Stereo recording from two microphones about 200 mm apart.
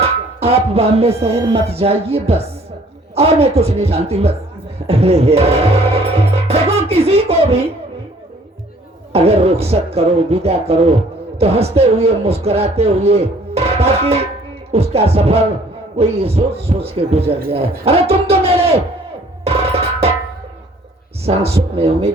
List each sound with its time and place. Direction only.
0.0 s speech: 30° right (ahead or behind)
9.1 s speech: 30° right (ahead or behind)
19.5 s music: 30° right (ahead or behind)
21.2 s speech: 30° right (ahead or behind)